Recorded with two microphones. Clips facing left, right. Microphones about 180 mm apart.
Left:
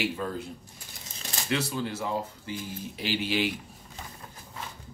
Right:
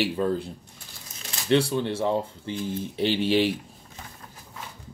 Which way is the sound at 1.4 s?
30° right (ahead or behind).